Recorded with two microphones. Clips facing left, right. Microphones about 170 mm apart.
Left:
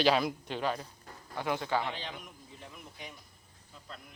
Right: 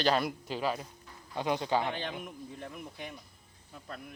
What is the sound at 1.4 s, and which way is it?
Speech, 20° right (ahead or behind).